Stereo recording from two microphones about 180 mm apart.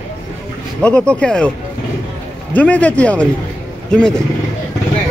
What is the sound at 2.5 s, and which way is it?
A man's voice, 10° left (ahead or behind).